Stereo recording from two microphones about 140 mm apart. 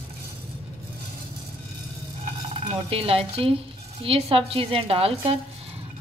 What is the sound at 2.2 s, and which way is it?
Dishes, 45° right (ahead or behind).